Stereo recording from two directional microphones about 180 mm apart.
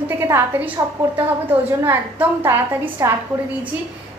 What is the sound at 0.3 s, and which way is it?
A woman's voice, 10° right (ahead or behind).